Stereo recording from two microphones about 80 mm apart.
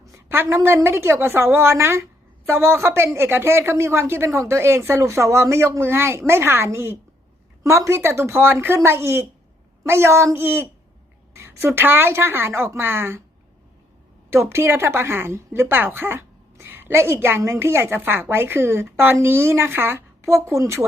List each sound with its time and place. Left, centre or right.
0.0 s speech: right
14.3 s a woman's voice: right